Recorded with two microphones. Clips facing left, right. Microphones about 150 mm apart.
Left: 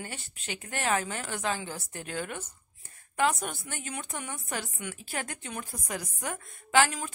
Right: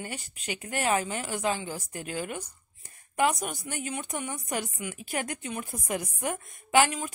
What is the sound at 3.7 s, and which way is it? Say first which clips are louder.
A woman's voice: right 4 dB; 10° right (ahead or behind).